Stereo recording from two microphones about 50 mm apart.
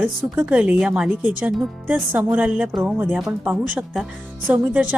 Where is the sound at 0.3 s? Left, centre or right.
Right.